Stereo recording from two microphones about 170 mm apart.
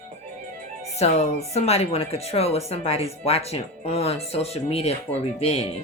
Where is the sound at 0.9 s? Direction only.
40° left (ahead or behind).